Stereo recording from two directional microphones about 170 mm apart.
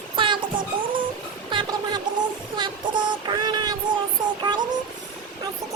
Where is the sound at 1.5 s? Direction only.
30° right (ahead or behind).